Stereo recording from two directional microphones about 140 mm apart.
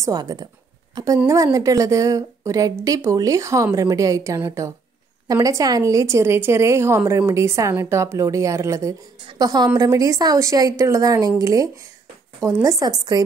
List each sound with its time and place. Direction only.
0.0 s a woman's voice: 25° right (ahead or behind)